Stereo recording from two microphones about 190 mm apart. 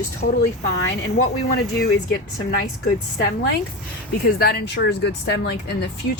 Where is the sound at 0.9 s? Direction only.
65° left (ahead or behind).